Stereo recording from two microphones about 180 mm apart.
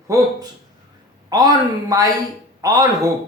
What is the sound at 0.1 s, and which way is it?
Speech, 15° right (ahead or behind).